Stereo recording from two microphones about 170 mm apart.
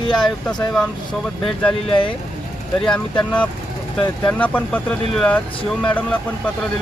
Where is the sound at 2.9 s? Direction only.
5° left (ahead or behind).